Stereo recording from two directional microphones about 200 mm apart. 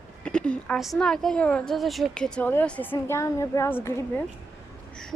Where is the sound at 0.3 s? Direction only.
5° left (ahead or behind).